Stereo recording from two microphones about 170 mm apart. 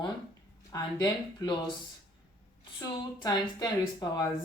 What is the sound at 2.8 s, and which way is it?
Speech, 25° left (ahead or behind).